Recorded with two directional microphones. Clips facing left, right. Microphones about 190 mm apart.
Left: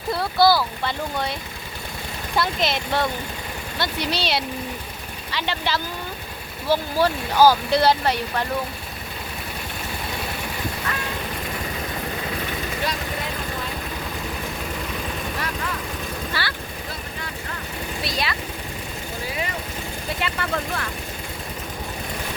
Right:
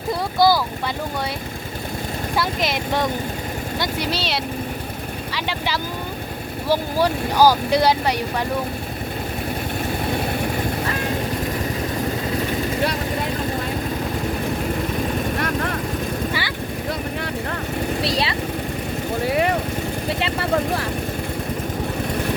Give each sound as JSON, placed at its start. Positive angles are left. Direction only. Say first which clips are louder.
{"t": 0.1, "sound": "speech", "louder": "right 1 dB", "side_deg": -15}
{"t": 2.3, "sound": "speech", "louder": "left 1 dB", "side_deg": -10}
{"t": 10.1, "sound": "vehicle", "louder": "right 7 dB", "side_deg": -50}
{"t": 15.4, "sound": "vehicle", "louder": "right 6 dB", "side_deg": -55}
{"t": 16.4, "sound": "vehicle", "louder": "right 2 dB", "side_deg": -15}
{"t": 18.0, "sound": "vehicle", "louder": "right 2 dB", "side_deg": -30}
{"t": 19.2, "sound": "vehicle", "louder": "right 10 dB", "side_deg": -60}
{"t": 20.1, "sound": "vehicle", "louder": "right 5 dB", "side_deg": -30}